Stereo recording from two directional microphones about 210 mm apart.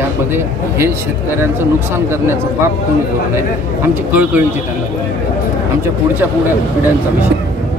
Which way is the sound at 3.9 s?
10° right (ahead or behind).